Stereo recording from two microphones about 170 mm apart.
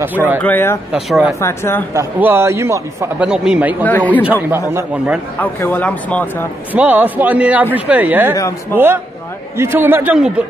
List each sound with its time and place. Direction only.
0.0 s speech: 10° right (ahead or behind)
0.4 s speech: 10° left (ahead or behind)
0.9 s speech: 5° right (ahead or behind)
1.4 s speech: 15° left (ahead or behind)
2.0 s speech: 15° right (ahead or behind)
3.2 s speech: 5° right (ahead or behind)
3.8 s speech: 10° left (ahead or behind)
4.3 s speech: 10° right (ahead or behind)
5.4 s speech: 10° left (ahead or behind)
6.7 s speech: 10° right (ahead or behind)